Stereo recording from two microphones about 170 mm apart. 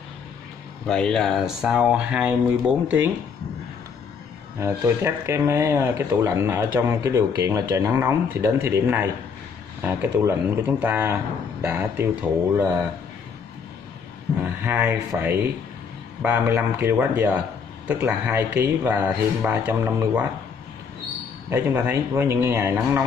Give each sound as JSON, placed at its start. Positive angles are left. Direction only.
{"t": 0.8, "sound": "speech", "side_deg": 5}
{"t": 4.6, "sound": "speech", "side_deg": -15}
{"t": 14.6, "sound": "speech", "side_deg": -10}
{"t": 21.5, "sound": "speech", "side_deg": -15}